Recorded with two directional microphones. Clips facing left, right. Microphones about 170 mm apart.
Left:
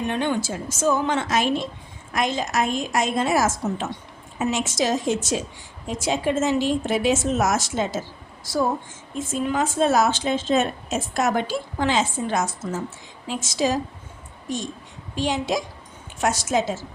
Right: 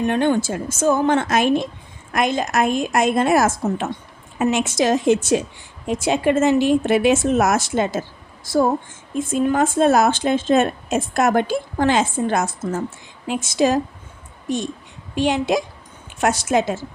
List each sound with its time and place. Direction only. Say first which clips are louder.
0.1 s a woman's voice: right 6 dB; 50° right (ahead or behind)
9.1 s a woman's voice: right 5 dB; 50° right (ahead or behind)
15.1 s a woman's voice: right 5 dB; 60° right (ahead or behind)